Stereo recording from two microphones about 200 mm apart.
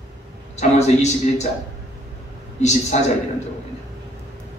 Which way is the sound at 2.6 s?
35° left (ahead or behind).